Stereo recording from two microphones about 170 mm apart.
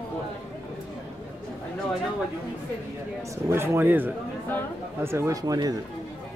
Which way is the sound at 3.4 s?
15° right (ahead or behind).